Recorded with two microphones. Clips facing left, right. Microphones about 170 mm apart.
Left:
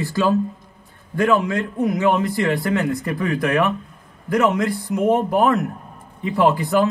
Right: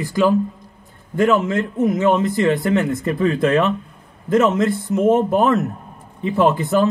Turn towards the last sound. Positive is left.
turn(degrees=-20)  # may be behind; listen again after turning